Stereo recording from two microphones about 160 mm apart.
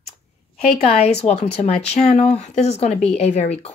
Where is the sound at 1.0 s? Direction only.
40° left (ahead or behind).